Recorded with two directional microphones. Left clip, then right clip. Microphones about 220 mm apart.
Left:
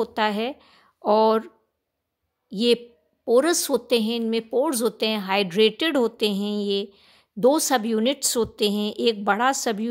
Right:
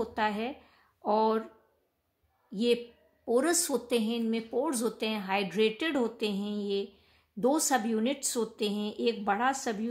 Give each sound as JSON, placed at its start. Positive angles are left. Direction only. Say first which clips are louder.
{"t": 0.0, "sound": "a woman's voice", "louder": "left 7 dB", "side_deg": 45}
{"t": 2.5, "sound": "a woman's voice", "louder": "left 7 dB", "side_deg": 45}